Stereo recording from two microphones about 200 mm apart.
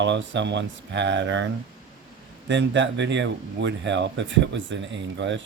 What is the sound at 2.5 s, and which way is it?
Speech, 65° right (ahead or behind).